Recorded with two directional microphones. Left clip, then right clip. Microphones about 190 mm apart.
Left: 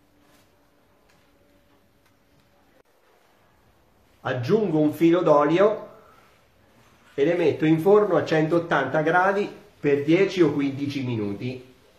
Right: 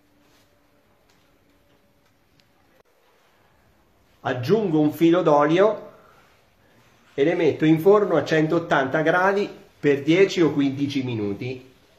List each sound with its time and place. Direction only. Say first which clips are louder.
4.2 s speech: right 1 dB; 45° right (ahead or behind)
7.2 s speech: right 1 dB; 40° right (ahead or behind)